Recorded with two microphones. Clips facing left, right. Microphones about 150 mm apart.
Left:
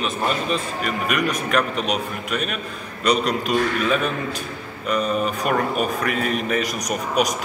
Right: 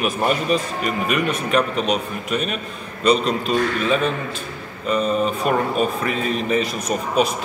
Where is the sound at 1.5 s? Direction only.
35° right (ahead or behind).